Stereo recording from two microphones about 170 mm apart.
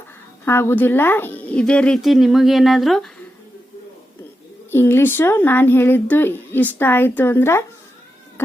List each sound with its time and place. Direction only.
0.4 s speech: 15° left (ahead or behind)
4.7 s speech: 15° left (ahead or behind)